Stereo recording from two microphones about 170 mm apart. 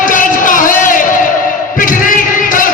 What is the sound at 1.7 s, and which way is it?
Crowd, 50° left (ahead or behind).